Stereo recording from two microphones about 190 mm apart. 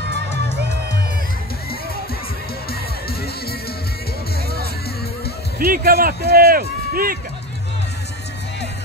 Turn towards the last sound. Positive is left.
turn(degrees=-50)  # may be behind; listen again after turning